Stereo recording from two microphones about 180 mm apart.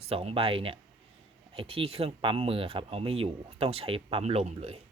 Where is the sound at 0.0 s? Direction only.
35° right (ahead or behind).